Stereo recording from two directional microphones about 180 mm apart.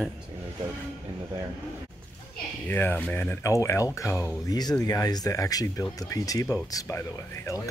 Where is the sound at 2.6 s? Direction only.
10° left (ahead or behind).